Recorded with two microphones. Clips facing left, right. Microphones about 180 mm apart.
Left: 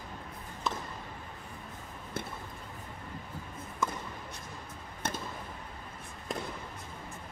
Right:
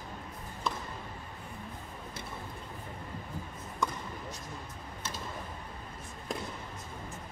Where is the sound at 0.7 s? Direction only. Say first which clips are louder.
Even; centre (ahead or behind).